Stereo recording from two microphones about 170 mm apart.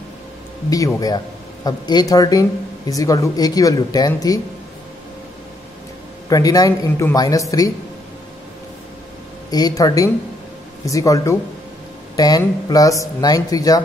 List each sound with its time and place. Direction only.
0.7 s speech: 20° left (ahead or behind)
6.2 s speech: 20° left (ahead or behind)
9.5 s speech: 20° left (ahead or behind)